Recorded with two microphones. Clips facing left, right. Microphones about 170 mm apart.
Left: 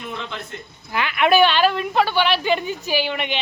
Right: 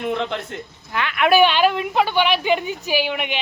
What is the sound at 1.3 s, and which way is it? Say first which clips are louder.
A woman's voice: right 1 dB; 15° right (ahead or behind).